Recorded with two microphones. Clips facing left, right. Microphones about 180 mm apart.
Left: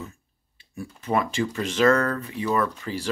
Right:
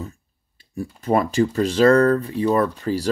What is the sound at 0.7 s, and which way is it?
Speech, 35° right (ahead or behind).